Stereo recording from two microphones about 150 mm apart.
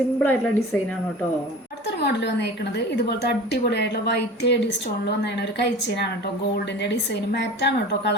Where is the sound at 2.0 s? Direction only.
90° left.